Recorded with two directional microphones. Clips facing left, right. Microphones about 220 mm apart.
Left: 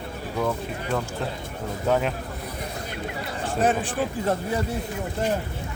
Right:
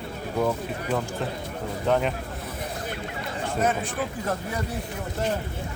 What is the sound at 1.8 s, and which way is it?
Speech, 5° left (ahead or behind).